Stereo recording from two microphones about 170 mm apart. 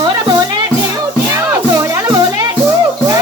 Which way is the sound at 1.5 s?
20° right (ahead or behind).